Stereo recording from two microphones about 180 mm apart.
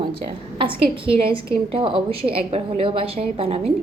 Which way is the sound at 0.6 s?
30° right (ahead or behind).